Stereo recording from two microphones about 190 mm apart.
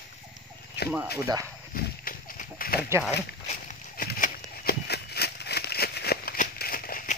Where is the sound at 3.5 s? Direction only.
50° left (ahead or behind).